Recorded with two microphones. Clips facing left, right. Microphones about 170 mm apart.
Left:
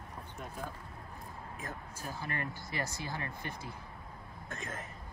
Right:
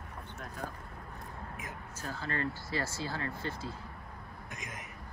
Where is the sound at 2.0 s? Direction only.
15° left (ahead or behind).